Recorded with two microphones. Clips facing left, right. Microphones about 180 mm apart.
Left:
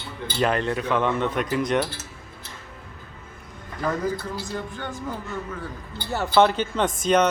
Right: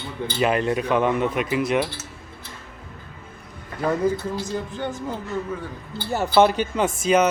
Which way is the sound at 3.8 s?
25° right (ahead or behind).